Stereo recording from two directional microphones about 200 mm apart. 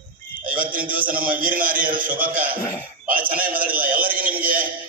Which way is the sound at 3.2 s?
45° right (ahead or behind).